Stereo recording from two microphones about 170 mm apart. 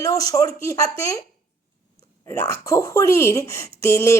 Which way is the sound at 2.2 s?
15° left (ahead or behind).